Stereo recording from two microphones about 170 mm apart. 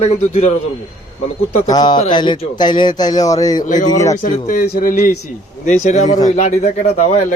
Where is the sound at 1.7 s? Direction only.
25° left (ahead or behind).